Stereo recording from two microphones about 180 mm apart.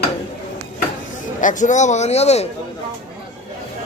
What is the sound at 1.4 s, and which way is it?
Speech, 45° left (ahead or behind).